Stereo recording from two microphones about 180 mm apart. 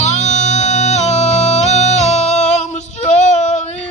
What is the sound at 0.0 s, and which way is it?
Music, 40° left (ahead or behind).